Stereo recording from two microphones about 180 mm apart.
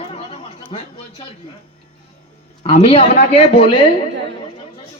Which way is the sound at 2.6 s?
30° left (ahead or behind).